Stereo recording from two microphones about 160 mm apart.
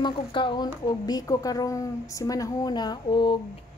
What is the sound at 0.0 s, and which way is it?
Speech, 30° left (ahead or behind).